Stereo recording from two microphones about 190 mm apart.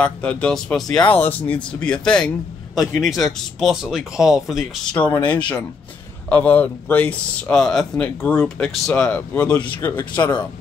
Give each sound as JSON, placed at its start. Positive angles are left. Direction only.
{"t": 0.0, "sound": "a man's voice", "side_deg": 5}
{"t": 6.2, "sound": "speech", "side_deg": 10}
{"t": 9.6, "sound": "speech", "side_deg": 20}